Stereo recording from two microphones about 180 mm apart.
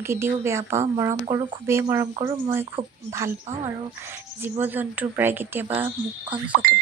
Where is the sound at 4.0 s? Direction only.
10° right (ahead or behind).